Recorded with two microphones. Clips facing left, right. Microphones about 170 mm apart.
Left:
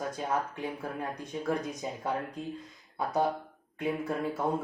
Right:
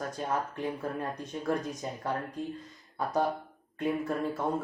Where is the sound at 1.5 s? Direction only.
10° left (ahead or behind).